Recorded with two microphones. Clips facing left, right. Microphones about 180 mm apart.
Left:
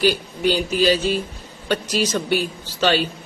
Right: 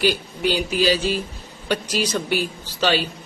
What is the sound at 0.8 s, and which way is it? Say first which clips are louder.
Speech: left 1 dB; 10° right (ahead or behind).